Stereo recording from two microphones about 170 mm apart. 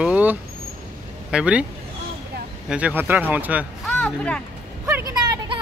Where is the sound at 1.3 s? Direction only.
5° right (ahead or behind).